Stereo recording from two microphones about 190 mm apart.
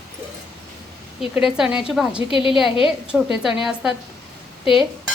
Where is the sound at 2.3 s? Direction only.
25° left (ahead or behind).